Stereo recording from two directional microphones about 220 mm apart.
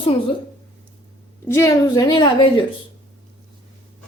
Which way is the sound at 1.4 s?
15° left (ahead or behind).